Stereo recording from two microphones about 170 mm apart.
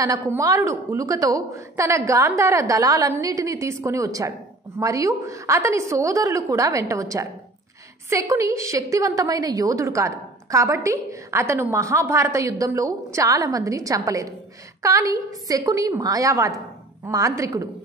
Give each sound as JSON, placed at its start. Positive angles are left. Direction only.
{"t": 0.0, "sound": "a woman's voice", "side_deg": -20}